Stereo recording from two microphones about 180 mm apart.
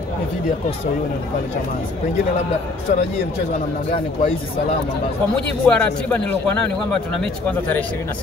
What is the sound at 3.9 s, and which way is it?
Speech, 35° left (ahead or behind).